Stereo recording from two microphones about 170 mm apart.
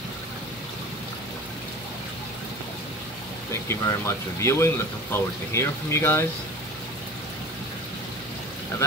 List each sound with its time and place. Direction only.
3.6 s speech: 15° left (ahead or behind)